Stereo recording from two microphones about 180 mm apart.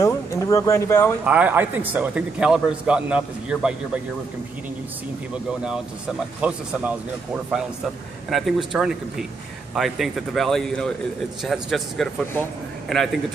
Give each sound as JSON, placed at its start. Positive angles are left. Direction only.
{"t": 0.0, "sound": "speech", "side_deg": 15}
{"t": 1.2, "sound": "a man's voice", "side_deg": -5}
{"t": 5.3, "sound": "speech", "side_deg": -5}
{"t": 8.3, "sound": "speech", "side_deg": 0}